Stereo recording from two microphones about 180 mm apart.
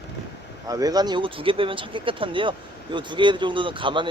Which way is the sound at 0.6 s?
20° right (ahead or behind).